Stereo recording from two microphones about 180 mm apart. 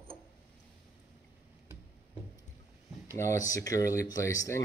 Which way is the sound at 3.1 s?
15° left (ahead or behind).